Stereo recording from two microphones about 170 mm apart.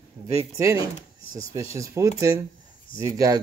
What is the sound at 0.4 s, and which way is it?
Speech, 15° right (ahead or behind).